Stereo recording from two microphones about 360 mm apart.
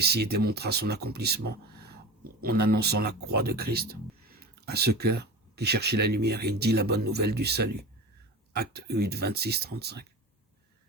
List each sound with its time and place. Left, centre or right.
0.0 s speech: right